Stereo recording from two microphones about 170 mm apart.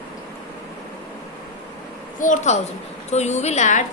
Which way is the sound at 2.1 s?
50° left (ahead or behind).